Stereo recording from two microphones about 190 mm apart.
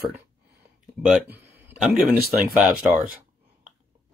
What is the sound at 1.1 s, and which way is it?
A man's voice, 10° right (ahead or behind).